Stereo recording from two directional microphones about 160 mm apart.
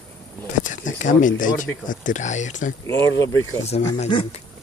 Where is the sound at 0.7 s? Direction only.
55° left (ahead or behind).